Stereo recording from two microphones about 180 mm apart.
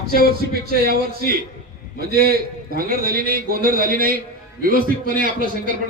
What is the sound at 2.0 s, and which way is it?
A man's voice, 55° right (ahead or behind).